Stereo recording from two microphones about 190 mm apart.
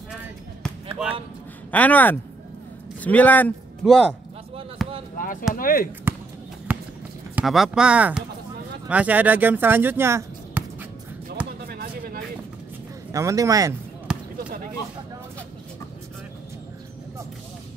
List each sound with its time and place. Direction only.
1.7 s a man's voice: 10° left (ahead or behind)
4.8 s basketball bounce: centre (ahead or behind)
5.1 s speech: 45° left (ahead or behind)
6.1 s basketball bounce: 10° right (ahead or behind)
6.7 s clip-clop: 10° right (ahead or behind)
7.3 s speech: centre (ahead or behind)
11.6 s a sound: 55° right (ahead or behind)
13.1 s speech: 15° right (ahead or behind)
14.1 s basketball bounce: 5° right (ahead or behind)